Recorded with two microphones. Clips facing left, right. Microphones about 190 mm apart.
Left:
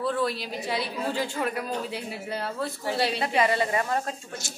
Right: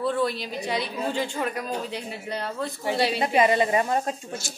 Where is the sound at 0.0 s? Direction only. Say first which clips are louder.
Right 2 dB; centre (ahead or behind).